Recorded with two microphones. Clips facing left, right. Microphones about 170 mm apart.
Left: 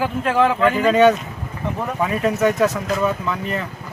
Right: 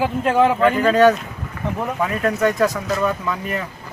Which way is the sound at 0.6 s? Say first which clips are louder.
Right 1 dB; centre (ahead or behind).